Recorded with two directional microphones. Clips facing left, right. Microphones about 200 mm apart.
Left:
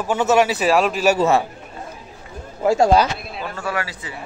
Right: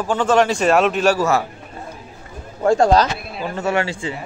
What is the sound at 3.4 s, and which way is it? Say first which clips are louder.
Speech: right 6 dB; 20° right (ahead or behind).